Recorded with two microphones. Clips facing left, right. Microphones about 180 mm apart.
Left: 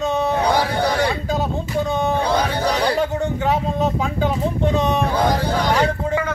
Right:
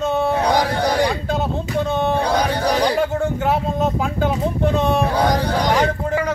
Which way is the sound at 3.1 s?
Centre (ahead or behind).